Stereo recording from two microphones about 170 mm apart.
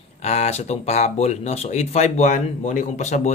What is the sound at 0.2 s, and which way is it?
Speech, 40° left (ahead or behind).